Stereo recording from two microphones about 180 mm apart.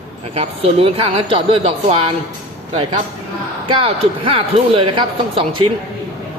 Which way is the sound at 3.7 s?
30° right (ahead or behind).